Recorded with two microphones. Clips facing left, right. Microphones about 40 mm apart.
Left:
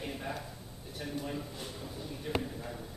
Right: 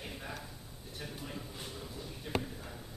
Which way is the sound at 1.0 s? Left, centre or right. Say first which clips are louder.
Left 6 dB; centre.